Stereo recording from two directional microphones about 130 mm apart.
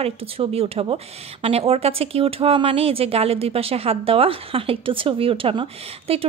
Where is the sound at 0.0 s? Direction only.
50° right (ahead or behind).